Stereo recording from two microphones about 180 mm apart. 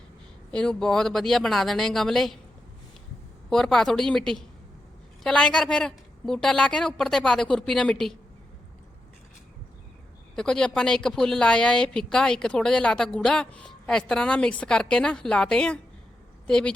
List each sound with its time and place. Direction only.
0.5 s a woman's voice: 5° left (ahead or behind)
3.5 s a woman's voice: centre (ahead or behind)
10.3 s a woman's voice: 5° left (ahead or behind)